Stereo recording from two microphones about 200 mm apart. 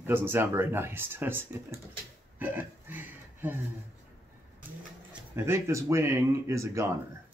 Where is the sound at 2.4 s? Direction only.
10° right (ahead or behind).